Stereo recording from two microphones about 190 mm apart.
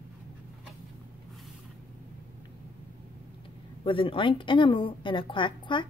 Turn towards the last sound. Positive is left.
turn(degrees=25)  # may be behind; listen again after turning